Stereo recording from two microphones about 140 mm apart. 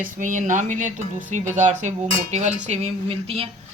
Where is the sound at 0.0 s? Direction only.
65° right (ahead or behind).